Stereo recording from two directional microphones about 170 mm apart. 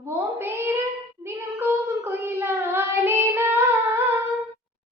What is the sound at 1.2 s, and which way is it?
Child singing, 15° right (ahead or behind).